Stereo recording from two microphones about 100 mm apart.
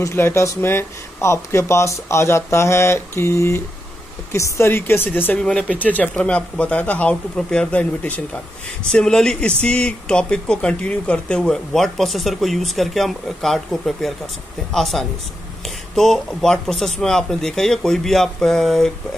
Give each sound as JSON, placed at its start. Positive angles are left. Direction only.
{"t": 0.0, "sound": "speech", "side_deg": 25}
{"t": 5.4, "sound": "a man's voice", "side_deg": 5}